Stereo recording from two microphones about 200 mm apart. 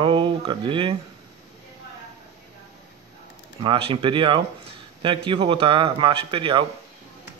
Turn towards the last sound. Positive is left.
turn(degrees=-25)  # may be behind; listen again after turning